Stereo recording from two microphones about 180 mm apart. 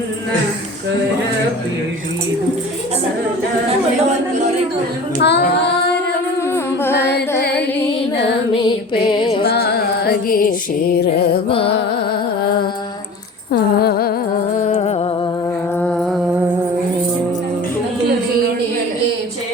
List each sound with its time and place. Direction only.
5.2 s child singing: 70° left (ahead or behind)
9.4 s music: 65° left (ahead or behind)
11.4 s music: 30° left (ahead or behind)
13.5 s humming: 60° left (ahead or behind)
14.7 s music: 35° left (ahead or behind)
15.8 s music: 5° left (ahead or behind)